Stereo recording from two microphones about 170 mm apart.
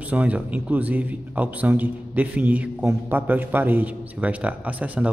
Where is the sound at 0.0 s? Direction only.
10° right (ahead or behind).